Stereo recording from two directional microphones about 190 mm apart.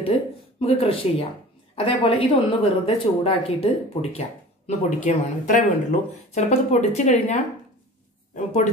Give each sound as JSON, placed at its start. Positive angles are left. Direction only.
{"t": 0.0, "sound": "speech", "side_deg": 30}